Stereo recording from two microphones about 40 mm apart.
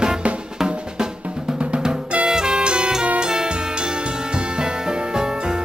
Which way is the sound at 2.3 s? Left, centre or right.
Centre.